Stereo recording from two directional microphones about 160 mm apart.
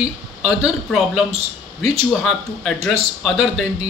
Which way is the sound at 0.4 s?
5° right (ahead or behind).